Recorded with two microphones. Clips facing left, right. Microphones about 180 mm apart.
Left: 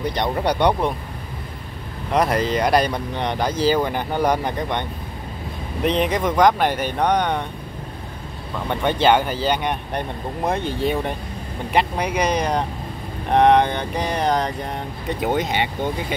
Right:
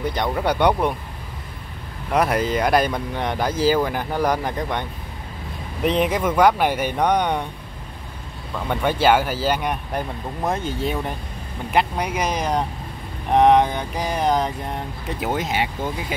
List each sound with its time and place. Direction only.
0.2 s speech: 20° left (ahead or behind)
0.6 s speech: 10° right (ahead or behind)
2.1 s speech: 5° right (ahead or behind)
5.9 s speech: 5° right (ahead or behind)
8.6 s speech: 5° right (ahead or behind)